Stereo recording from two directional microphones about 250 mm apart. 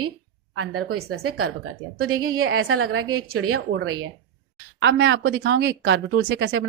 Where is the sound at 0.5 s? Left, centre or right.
Right.